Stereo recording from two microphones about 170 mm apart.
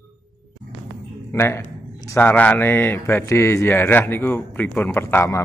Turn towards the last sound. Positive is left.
turn(degrees=15)  # may be behind; listen again after turning